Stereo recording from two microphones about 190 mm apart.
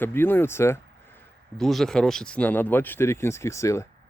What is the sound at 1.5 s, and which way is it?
Speech, centre (ahead or behind).